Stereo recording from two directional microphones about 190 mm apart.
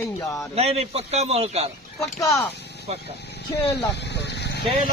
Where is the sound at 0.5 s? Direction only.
30° right (ahead or behind).